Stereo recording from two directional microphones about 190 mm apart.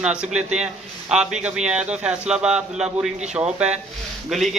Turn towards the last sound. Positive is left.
turn(degrees=0)  # may be behind; listen again after turning